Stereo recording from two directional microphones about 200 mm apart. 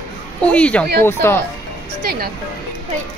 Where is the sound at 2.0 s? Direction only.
50° right (ahead or behind).